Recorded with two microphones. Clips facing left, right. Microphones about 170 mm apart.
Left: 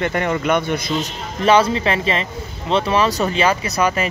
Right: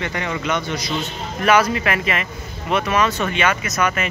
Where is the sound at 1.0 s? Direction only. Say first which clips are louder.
Left 2 dB; 30° left (ahead or behind).